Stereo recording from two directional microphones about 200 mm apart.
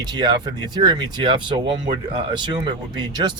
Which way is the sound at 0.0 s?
20° right (ahead or behind).